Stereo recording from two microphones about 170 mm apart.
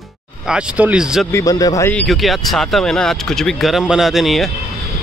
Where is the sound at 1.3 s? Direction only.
20° left (ahead or behind).